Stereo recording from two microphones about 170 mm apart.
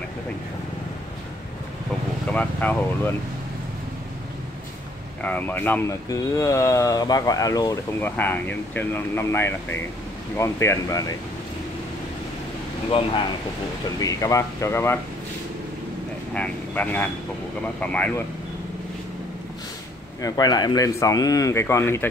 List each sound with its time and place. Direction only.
2.3 s speech: 10° left (ahead or behind)
5.2 s speech: 10° left (ahead or behind)
8.0 s speech: 10° left (ahead or behind)
13.9 s speech: 20° left (ahead or behind)
16.3 s speech: 10° left (ahead or behind)
20.2 s speech: 20° left (ahead or behind)